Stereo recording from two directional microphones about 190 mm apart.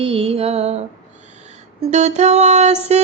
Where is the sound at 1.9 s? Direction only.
35° right (ahead or behind).